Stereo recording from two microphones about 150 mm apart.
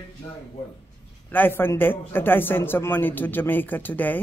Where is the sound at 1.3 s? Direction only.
15° left (ahead or behind).